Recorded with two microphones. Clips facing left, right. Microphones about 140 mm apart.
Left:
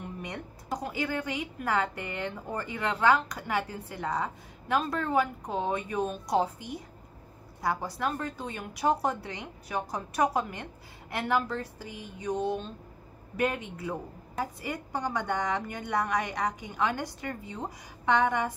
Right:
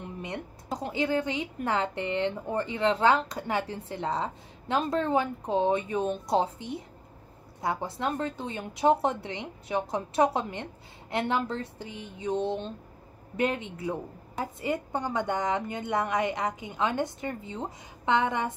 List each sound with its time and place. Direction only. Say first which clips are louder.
0.3 s a woman's voice: right 1 dB; 25° right (ahead or behind)